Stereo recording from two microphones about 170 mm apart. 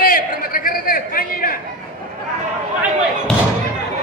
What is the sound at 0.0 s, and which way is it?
Chatter, 55° left (ahead or behind).